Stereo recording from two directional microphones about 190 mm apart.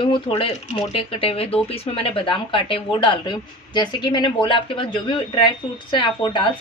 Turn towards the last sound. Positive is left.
turn(degrees=25)  # may be behind; listen again after turning